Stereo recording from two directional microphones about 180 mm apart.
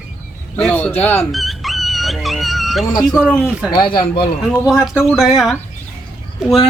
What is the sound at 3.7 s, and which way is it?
Speech, 25° left (ahead or behind).